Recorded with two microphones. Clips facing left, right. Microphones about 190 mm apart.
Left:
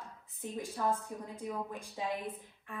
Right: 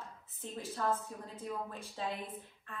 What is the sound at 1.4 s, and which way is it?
A woman's voice, 15° left (ahead or behind).